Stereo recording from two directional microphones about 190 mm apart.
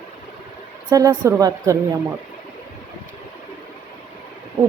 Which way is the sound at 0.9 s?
20° right (ahead or behind).